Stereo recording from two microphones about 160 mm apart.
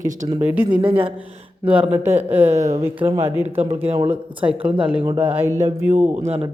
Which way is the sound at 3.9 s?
40° right (ahead or behind).